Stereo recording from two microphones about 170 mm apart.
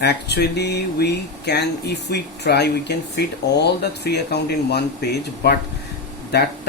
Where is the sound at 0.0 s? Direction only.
80° left.